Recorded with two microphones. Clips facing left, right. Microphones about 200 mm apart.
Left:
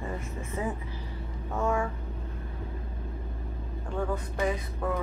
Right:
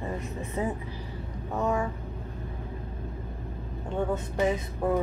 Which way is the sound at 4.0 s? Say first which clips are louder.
Right 3 dB; 25° right (ahead or behind).